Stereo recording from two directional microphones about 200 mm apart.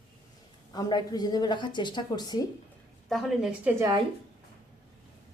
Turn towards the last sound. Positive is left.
turn(degrees=-15)  # may be behind; listen again after turning